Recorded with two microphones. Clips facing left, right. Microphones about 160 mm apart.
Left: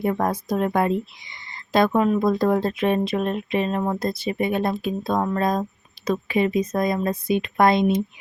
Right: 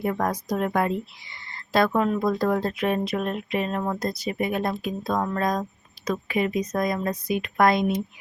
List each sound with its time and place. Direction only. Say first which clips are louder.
0.0 s speech: left 3 dB; 25° left (ahead or behind)